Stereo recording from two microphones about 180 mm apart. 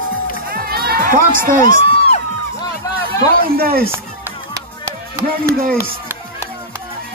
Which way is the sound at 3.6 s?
55° right (ahead or behind).